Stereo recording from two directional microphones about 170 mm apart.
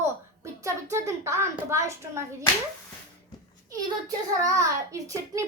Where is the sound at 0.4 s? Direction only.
15° right (ahead or behind).